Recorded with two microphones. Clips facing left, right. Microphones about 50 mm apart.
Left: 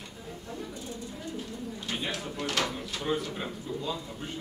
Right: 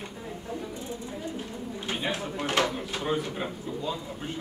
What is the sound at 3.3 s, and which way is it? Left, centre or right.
Speech, centre.